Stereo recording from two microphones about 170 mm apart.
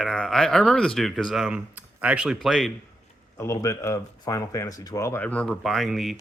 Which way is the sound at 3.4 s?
15° left (ahead or behind).